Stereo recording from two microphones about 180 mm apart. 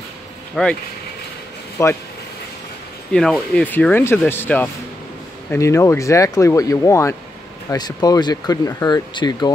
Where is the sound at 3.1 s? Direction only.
5° left (ahead or behind).